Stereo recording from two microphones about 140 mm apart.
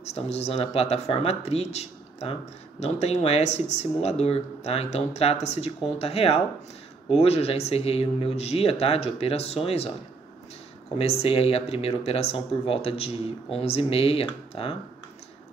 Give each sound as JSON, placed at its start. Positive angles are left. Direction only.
{"t": 0.0, "sound": "speech", "side_deg": 50}
{"t": 11.0, "sound": "speech", "side_deg": 45}